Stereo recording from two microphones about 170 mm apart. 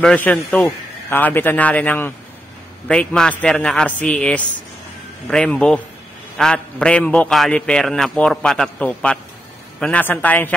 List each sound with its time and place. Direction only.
0.0 s a man's voice: 10° left (ahead or behind)